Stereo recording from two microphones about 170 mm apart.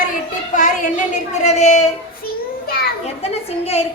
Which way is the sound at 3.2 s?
35° left (ahead or behind).